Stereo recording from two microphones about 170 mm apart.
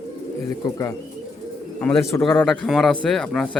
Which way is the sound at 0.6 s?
20° left (ahead or behind).